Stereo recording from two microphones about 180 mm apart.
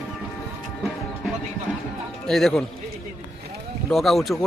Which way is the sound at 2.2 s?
5° left (ahead or behind).